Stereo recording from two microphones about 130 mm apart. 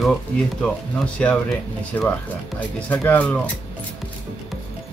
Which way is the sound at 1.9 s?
20° left (ahead or behind).